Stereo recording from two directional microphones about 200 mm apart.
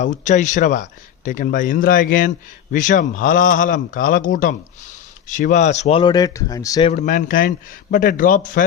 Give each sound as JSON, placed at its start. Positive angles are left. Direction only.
{"t": 0.0, "sound": "speech", "side_deg": 35}
{"t": 6.9, "sound": "a man's voice", "side_deg": 40}